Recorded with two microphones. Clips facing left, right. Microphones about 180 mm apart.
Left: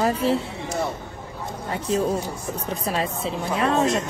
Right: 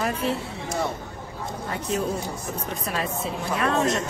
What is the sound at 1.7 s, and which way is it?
A woman's voice, 30° left (ahead or behind).